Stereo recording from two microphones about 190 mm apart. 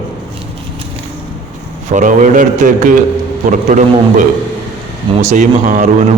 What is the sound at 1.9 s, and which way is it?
A man's voice, 40° right (ahead or behind).